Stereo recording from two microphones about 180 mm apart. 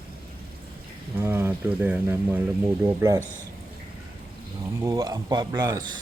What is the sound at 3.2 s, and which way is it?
Speech, 15° left (ahead or behind).